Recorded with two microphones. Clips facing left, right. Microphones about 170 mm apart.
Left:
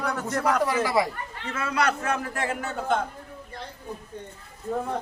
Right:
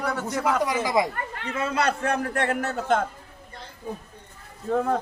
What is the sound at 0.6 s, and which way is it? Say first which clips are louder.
A man's voice: even; 15° right (ahead or behind).